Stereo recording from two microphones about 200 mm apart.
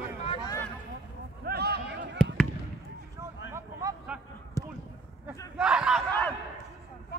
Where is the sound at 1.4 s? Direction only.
55° right (ahead or behind).